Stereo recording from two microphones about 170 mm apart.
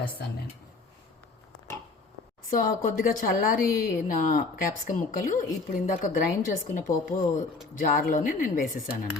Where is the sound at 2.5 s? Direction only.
55° left (ahead or behind).